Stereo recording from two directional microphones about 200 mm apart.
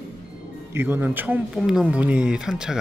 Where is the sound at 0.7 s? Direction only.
10° right (ahead or behind).